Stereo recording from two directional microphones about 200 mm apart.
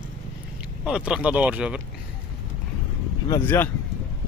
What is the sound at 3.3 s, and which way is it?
Speech, 10° left (ahead or behind).